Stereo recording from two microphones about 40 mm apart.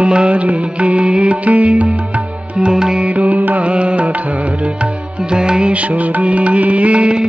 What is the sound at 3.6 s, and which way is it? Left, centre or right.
Music, right.